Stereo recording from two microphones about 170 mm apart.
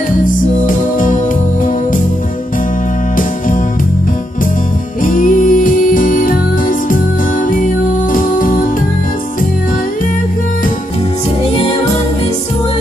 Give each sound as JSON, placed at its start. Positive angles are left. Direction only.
{"t": 0.7, "sound": "music", "side_deg": 50}
{"t": 5.0, "sound": "music", "side_deg": 50}
{"t": 7.5, "sound": "music", "side_deg": 55}